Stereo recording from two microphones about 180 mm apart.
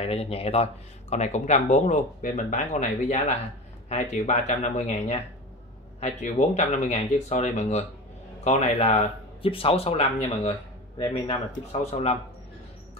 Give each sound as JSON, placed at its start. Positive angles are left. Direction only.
{"t": 0.0, "sound": "speech", "side_deg": 35}
{"t": 11.8, "sound": "speech", "side_deg": 35}